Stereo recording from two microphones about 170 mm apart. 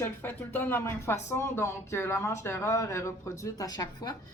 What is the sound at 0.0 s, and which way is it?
Speech, 10° left (ahead or behind).